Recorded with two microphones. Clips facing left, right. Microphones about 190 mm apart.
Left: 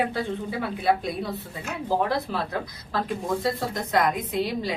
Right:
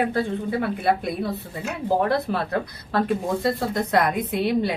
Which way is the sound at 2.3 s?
55° right (ahead or behind).